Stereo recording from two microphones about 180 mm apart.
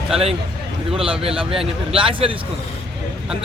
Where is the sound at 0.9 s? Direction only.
30° right (ahead or behind).